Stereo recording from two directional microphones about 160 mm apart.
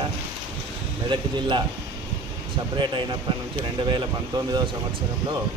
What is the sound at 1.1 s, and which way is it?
Speech, 30° right (ahead or behind).